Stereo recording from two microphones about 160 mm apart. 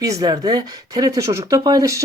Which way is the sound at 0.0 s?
25° right (ahead or behind).